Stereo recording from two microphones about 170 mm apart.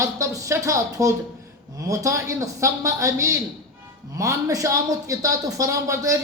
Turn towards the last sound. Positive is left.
turn(degrees=-20)  # may be behind; listen again after turning